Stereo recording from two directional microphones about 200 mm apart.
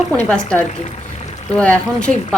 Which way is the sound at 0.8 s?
35° left (ahead or behind).